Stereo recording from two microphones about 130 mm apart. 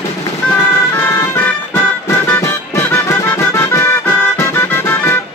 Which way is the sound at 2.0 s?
20° left (ahead or behind).